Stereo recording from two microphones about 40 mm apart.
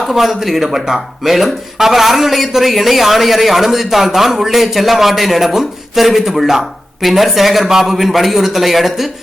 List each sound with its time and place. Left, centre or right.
0.0 s speech: centre